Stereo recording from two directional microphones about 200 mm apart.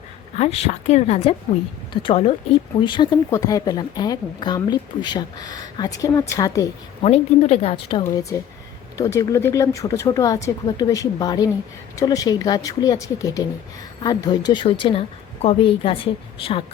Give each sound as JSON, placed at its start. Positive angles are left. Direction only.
{"t": 0.3, "sound": "a woman's voice", "side_deg": 30}
{"t": 7.0, "sound": "speech", "side_deg": 30}